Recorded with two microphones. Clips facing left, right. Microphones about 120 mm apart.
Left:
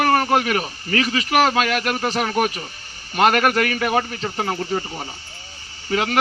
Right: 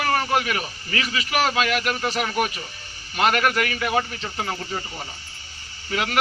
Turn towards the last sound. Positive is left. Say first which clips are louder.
# left 3 dB
turn(degrees=35)  # may be behind; listen again after turning